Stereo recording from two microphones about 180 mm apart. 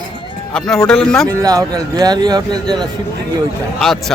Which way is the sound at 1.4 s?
20° right (ahead or behind).